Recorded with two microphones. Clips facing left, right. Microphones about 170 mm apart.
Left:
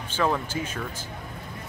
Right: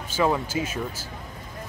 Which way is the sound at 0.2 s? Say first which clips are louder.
Right 2 dB; 10° right (ahead or behind).